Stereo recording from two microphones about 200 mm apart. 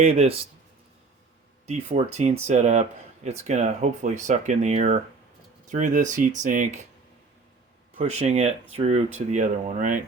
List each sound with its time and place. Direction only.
0.0 s speech: 30° right (ahead or behind)
1.6 s speech: 35° right (ahead or behind)
7.9 s speech: 35° right (ahead or behind)